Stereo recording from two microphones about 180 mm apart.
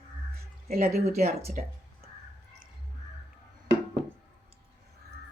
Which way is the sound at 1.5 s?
55° right (ahead or behind).